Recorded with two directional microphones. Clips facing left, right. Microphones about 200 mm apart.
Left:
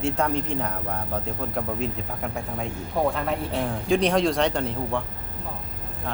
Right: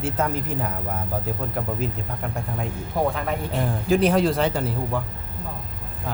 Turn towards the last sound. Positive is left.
turn(degrees=-5)  # may be behind; listen again after turning